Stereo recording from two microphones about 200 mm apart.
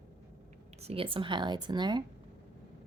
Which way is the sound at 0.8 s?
30° right (ahead or behind).